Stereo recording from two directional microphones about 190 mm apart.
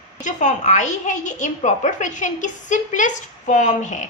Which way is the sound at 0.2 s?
40° left (ahead or behind).